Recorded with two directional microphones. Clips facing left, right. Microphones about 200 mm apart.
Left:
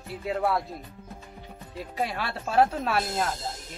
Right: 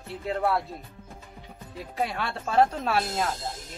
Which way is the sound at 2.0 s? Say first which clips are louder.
Right 1 dB; centre (ahead or behind).